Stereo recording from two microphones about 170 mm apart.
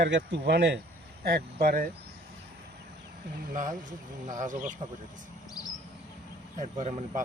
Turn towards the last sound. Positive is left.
turn(degrees=-40)  # may be behind; listen again after turning